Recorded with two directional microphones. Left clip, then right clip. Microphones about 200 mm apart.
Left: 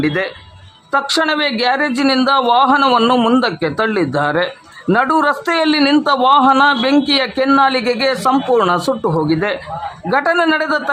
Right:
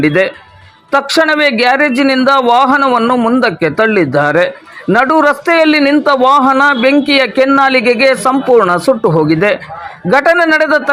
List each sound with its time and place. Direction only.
0.0 s a man's voice: 15° right (ahead or behind)